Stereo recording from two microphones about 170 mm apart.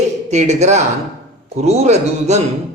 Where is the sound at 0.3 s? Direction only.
40° right (ahead or behind).